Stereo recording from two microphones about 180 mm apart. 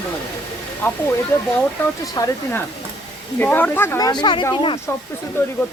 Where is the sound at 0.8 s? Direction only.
15° left (ahead or behind).